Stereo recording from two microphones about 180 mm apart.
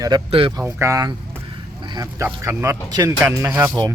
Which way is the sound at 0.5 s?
15° right (ahead or behind).